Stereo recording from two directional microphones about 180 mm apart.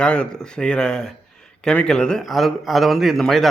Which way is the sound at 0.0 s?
5° left (ahead or behind).